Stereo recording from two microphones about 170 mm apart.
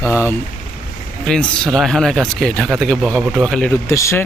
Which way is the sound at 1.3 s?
5° left (ahead or behind).